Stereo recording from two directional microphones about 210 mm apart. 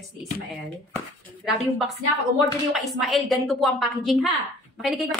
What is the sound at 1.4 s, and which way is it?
A woman's voice, centre (ahead or behind).